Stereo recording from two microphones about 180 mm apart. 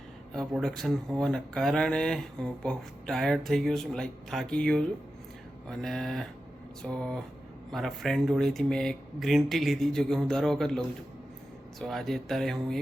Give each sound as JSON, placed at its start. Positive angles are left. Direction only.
{"t": 0.3, "sound": "speech", "side_deg": 5}